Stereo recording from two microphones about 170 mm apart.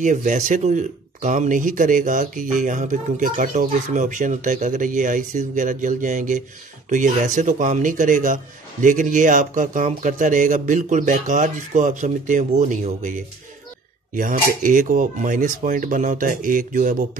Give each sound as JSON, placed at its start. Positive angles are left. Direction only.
{"t": 0.0, "sound": "speech", "side_deg": -50}